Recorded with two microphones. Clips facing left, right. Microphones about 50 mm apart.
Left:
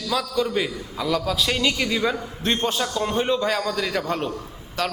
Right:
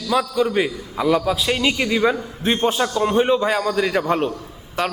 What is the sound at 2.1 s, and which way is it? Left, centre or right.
Speech, centre.